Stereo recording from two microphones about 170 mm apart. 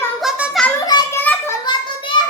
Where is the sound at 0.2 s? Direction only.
Centre (ahead or behind).